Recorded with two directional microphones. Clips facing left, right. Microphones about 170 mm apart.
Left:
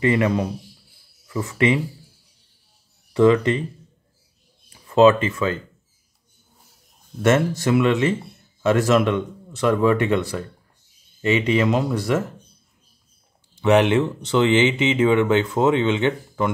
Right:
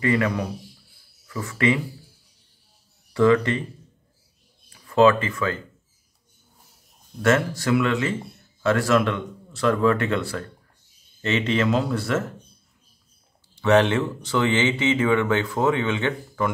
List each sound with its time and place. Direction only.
0.0 s speech: 20° left (ahead or behind)
3.1 s speech: 20° left (ahead or behind)
4.8 s speech: 20° left (ahead or behind)
7.2 s speech: 20° left (ahead or behind)
13.6 s speech: 15° left (ahead or behind)